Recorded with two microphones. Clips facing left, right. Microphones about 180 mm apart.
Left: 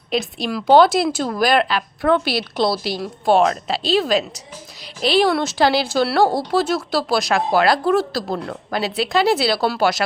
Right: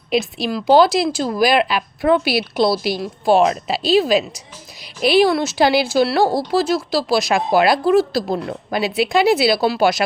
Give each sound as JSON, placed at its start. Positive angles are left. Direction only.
{"t": 0.1, "sound": "speech", "side_deg": -5}
{"t": 6.5, "sound": "speech", "side_deg": 0}
{"t": 7.3, "sound": "speech", "side_deg": -15}